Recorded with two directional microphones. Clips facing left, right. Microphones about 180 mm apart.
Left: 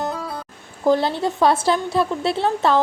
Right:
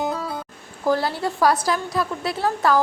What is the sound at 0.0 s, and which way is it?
Music, centre (ahead or behind).